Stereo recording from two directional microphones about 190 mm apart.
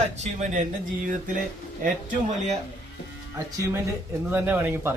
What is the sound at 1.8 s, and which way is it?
Speech, 40° right (ahead or behind).